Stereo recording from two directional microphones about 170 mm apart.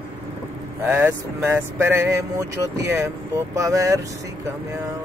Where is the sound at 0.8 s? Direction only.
15° right (ahead or behind).